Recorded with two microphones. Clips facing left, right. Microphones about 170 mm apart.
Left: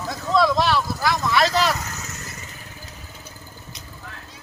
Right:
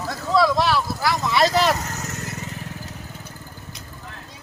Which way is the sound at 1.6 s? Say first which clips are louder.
Right 2 dB; 50° right (ahead or behind).